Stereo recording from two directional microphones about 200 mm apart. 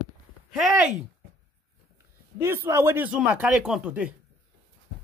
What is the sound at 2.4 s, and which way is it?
Speech, 10° right (ahead or behind).